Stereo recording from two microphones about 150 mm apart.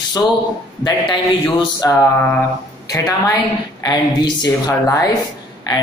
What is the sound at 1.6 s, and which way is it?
Music, 25° left (ahead or behind).